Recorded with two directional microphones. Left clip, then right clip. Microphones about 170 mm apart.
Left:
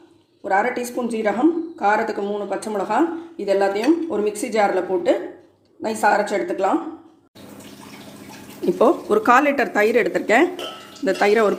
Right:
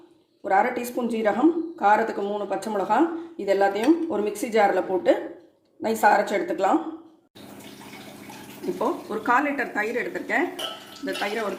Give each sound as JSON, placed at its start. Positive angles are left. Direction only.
{"t": 0.4, "sound": "speech", "side_deg": -10}
{"t": 8.8, "sound": "speech", "side_deg": 65}